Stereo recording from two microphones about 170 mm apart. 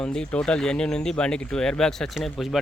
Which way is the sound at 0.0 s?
5° left (ahead or behind).